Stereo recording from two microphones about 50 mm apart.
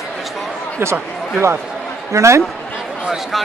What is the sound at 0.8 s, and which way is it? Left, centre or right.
A man's voice, right.